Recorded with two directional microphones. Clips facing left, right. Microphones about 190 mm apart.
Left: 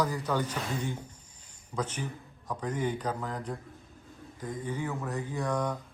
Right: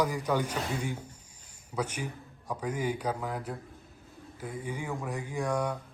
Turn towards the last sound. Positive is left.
turn(degrees=-10)  # may be behind; listen again after turning